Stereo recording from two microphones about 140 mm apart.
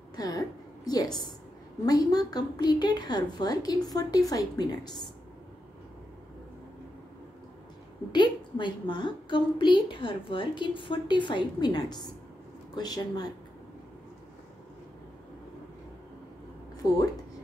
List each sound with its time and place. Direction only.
0.1 s a sound: 30° left (ahead or behind)
1.0 s a woman's voice: centre (ahead or behind)
1.9 s a woman's voice: 25° left (ahead or behind)
8.1 s a woman's voice: 35° left (ahead or behind)